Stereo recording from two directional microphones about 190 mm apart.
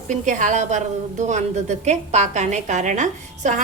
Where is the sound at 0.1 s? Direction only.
40° right (ahead or behind).